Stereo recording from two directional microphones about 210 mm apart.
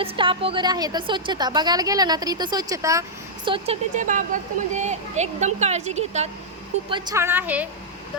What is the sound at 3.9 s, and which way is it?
A woman's voice, 40° right (ahead or behind).